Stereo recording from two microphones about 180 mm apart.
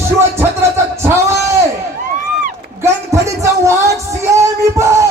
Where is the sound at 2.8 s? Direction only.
15° right (ahead or behind).